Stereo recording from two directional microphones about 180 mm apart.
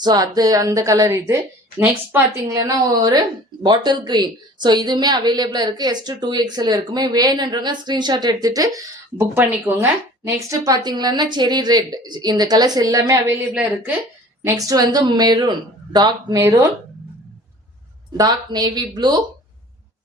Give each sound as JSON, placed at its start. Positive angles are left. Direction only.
{"t": 0.0, "sound": "a woman's voice", "side_deg": -20}
{"t": 14.4, "sound": "a woman's voice", "side_deg": -20}
{"t": 18.2, "sound": "a woman's voice", "side_deg": -20}